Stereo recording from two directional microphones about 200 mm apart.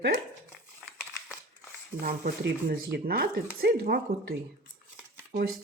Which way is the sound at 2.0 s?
50° right (ahead or behind).